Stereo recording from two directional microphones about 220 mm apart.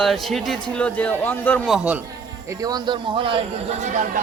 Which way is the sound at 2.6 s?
20° right (ahead or behind).